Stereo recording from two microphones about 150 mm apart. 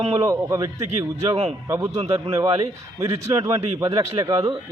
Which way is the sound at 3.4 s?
25° right (ahead or behind).